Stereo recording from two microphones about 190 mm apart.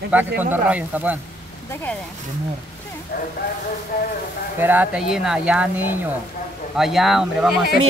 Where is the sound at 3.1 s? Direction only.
55° left (ahead or behind).